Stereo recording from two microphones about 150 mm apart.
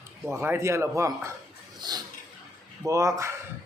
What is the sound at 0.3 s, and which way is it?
Speech, 15° right (ahead or behind).